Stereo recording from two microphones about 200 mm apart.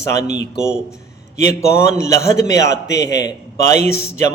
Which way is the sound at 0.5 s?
5° right (ahead or behind).